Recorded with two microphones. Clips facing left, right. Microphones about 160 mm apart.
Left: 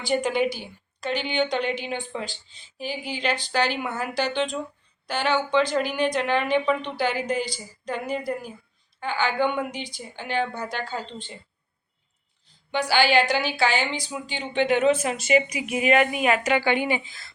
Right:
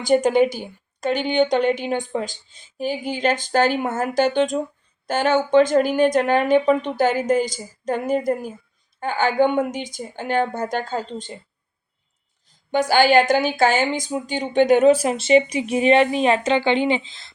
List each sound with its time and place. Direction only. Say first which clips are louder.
0.0 s a woman's voice: right 7 dB; 45° right (ahead or behind)
12.7 s speech: right 5 dB; 45° right (ahead or behind); by 17.3 s 25° right (ahead or behind)